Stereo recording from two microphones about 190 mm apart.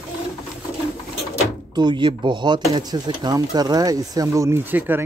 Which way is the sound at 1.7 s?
25° right (ahead or behind).